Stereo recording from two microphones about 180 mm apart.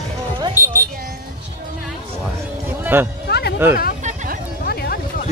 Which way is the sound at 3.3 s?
65° left (ahead or behind).